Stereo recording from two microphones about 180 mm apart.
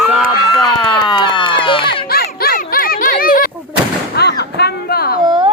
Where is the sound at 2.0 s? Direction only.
60° left (ahead or behind).